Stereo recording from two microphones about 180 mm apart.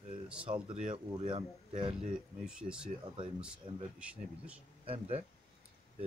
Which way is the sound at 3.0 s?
25° right (ahead or behind).